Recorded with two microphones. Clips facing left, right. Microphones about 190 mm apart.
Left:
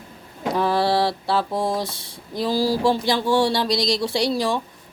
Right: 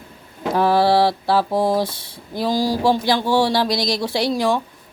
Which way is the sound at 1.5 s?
25° right (ahead or behind).